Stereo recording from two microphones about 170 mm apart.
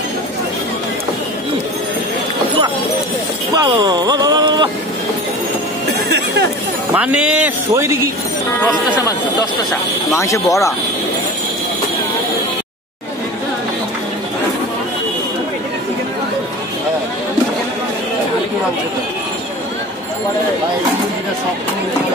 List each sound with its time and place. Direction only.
3.5 s speech: 25° right (ahead or behind)
6.9 s speech: 10° right (ahead or behind)
10.1 s speech: 20° left (ahead or behind)